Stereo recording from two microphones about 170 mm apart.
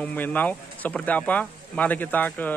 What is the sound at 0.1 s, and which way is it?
Speech, 10° left (ahead or behind).